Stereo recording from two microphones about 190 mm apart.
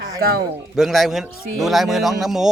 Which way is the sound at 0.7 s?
Centre (ahead or behind).